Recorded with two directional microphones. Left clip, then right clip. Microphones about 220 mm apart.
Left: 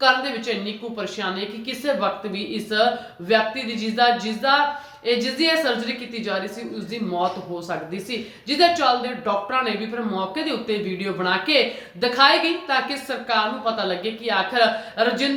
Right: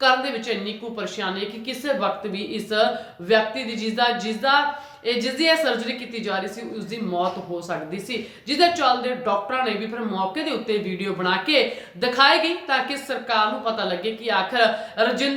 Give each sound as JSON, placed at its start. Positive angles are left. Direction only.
{"t": 0.0, "sound": "speech", "side_deg": -5}
{"t": 7.7, "sound": "speech", "side_deg": 0}